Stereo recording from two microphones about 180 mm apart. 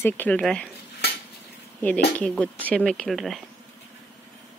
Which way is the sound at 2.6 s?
5° left (ahead or behind).